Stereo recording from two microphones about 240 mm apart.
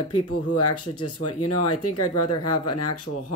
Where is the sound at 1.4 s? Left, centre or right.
Left.